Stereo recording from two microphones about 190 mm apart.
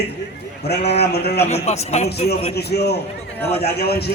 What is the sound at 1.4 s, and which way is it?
Speech, 35° left (ahead or behind).